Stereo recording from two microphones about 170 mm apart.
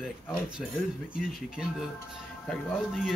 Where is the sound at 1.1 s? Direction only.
5° right (ahead or behind).